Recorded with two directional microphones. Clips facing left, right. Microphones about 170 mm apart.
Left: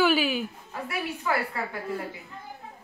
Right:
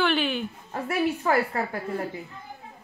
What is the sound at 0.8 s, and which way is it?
A woman's voice, 50° right (ahead or behind).